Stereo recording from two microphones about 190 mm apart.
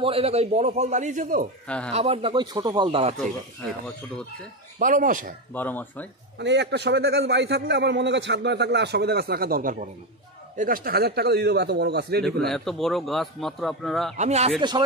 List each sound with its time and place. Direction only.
0.0 s a man's voice: 30° right (ahead or behind); by 1.5 s 45° right (ahead or behind)
1.9 s speech: 30° right (ahead or behind)
4.7 s speech: 45° right (ahead or behind)
5.5 s speech: 10° left (ahead or behind)
6.4 s a man's voice: 65° right (ahead or behind)
12.4 s speech: centre (ahead or behind)
14.1 s a man's voice: 35° right (ahead or behind)
14.6 s speech: 25° right (ahead or behind)